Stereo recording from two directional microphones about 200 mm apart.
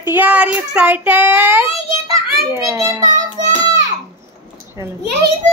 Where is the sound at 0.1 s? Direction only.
10° right (ahead or behind).